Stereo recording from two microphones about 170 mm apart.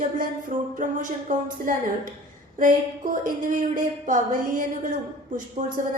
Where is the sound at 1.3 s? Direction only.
50° right (ahead or behind).